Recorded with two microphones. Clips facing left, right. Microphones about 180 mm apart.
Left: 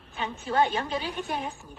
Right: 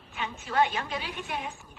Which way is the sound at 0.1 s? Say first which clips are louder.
Left 3 dB; 35° left (ahead or behind).